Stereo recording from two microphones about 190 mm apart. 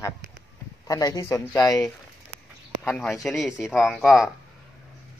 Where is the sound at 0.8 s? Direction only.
20° left (ahead or behind).